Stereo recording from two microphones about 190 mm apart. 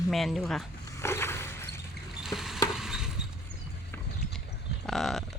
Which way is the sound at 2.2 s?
Centre (ahead or behind).